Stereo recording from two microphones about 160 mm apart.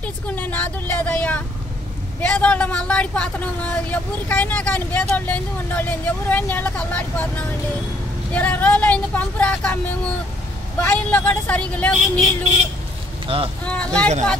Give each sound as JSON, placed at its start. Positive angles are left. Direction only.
{"t": 0.0, "sound": "speech", "side_deg": 10}
{"t": 13.3, "sound": "speech", "side_deg": -35}
{"t": 13.7, "sound": "speech", "side_deg": 5}